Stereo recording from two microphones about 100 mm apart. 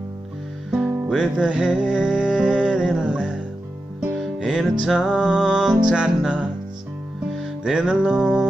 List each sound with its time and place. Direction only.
0.7 s music: 10° right (ahead or behind)